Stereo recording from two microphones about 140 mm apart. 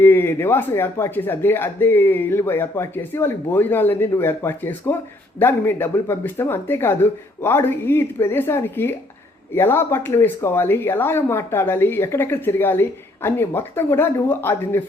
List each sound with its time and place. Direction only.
0.0 s speech: 15° left (ahead or behind)